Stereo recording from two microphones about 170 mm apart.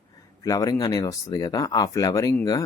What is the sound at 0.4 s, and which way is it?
Speech, 20° left (ahead or behind).